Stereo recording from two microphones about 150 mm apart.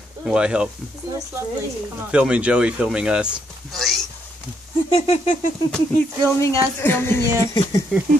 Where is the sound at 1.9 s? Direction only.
5° right (ahead or behind).